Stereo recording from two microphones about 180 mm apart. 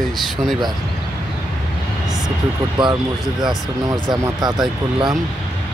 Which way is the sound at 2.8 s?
25° right (ahead or behind).